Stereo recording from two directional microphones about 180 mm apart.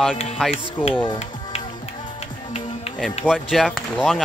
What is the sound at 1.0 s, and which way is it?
Music, 30° left (ahead or behind).